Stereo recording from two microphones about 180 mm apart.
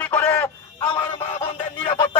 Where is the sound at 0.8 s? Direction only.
25° left (ahead or behind).